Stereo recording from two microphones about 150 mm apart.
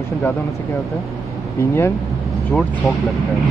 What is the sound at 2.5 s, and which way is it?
Speech, 10° left (ahead or behind).